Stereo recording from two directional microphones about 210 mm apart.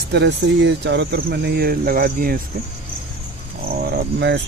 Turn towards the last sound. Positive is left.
turn(degrees=-55)  # may be behind; listen again after turning